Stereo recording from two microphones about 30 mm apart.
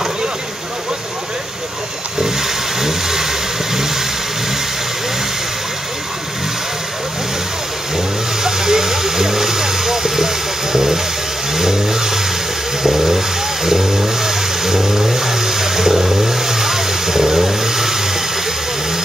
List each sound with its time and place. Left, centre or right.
2.2 s vehicle: centre
7.9 s vehicle: centre